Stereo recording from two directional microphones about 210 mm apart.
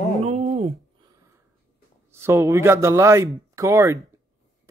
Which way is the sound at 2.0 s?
10° right (ahead or behind).